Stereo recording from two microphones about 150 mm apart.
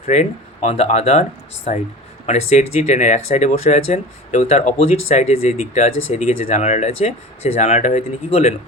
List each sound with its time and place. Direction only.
0.1 s speech: 50° left (ahead or behind)
2.2 s speech: 50° left (ahead or behind)